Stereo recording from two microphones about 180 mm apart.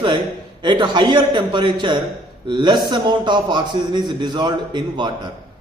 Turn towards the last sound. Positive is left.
turn(degrees=-25)  # may be behind; listen again after turning